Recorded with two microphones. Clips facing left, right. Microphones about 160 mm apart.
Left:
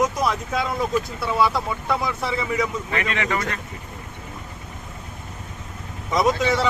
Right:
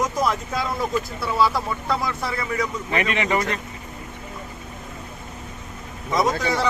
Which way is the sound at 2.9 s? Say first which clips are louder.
Right 2 dB; 20° right (ahead or behind).